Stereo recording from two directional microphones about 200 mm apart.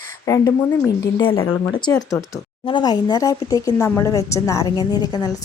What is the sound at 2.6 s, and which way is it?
Speech, 20° left (ahead or behind).